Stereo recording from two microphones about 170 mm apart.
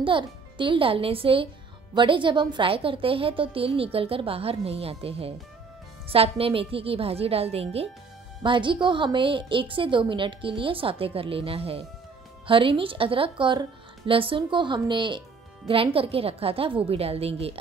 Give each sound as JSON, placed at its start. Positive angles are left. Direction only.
{"t": 0.0, "sound": "a woman's voice", "side_deg": -30}